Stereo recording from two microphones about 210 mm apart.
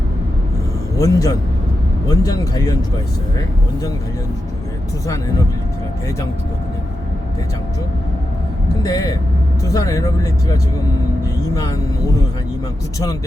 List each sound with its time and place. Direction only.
0.9 s speech: 15° left (ahead or behind)
8.8 s speech: 15° left (ahead or behind)